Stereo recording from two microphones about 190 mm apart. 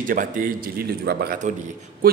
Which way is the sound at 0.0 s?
45° right (ahead or behind).